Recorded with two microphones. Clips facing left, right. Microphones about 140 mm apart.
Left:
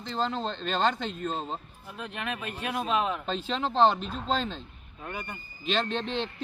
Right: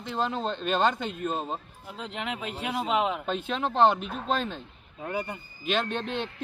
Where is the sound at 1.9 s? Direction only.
20° right (ahead or behind).